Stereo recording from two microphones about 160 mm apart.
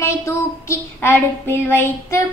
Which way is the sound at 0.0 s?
15° left (ahead or behind).